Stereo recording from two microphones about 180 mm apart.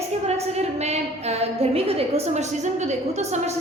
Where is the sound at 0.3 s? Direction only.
35° right (ahead or behind).